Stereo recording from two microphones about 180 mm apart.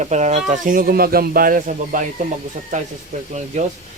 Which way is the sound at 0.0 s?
40° right (ahead or behind).